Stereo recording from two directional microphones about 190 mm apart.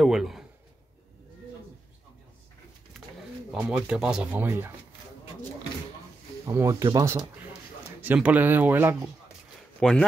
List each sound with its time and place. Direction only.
0.0 s a sound: centre (ahead or behind)
3.6 s speech: 5° right (ahead or behind)
6.4 s speech: 15° right (ahead or behind)
8.0 s speech: 10° right (ahead or behind)
9.8 s speech: 5° left (ahead or behind)